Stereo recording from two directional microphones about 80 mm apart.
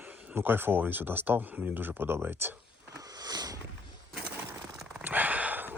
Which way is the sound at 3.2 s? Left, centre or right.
Right.